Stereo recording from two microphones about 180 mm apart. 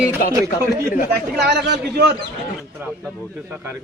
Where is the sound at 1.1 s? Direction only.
70° right (ahead or behind).